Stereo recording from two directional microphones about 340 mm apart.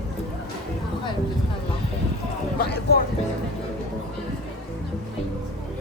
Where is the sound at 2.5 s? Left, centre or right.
Left.